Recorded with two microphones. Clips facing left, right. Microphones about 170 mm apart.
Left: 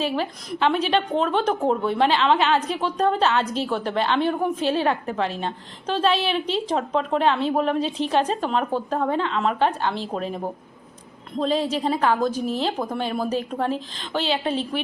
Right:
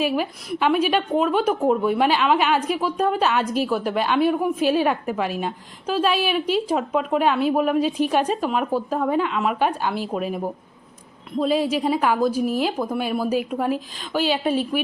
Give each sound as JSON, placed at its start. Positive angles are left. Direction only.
{"t": 0.0, "sound": "a woman's voice", "side_deg": -10}
{"t": 11.3, "sound": "a woman's voice", "side_deg": -10}